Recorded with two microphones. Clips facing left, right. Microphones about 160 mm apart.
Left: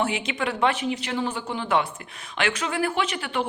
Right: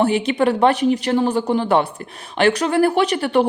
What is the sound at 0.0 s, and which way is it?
Speech, 35° right (ahead or behind).